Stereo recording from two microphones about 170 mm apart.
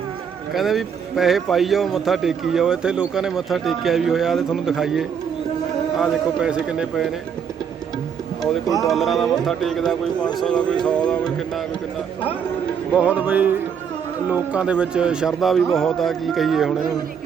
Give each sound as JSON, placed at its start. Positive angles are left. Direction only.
{"t": 0.5, "sound": "a man's voice", "side_deg": 0}
{"t": 8.6, "sound": "speech", "side_deg": 20}
{"t": 8.9, "sound": "a man's voice", "side_deg": 0}
{"t": 13.0, "sound": "music", "side_deg": -10}
{"t": 14.3, "sound": "a man's voice", "side_deg": -10}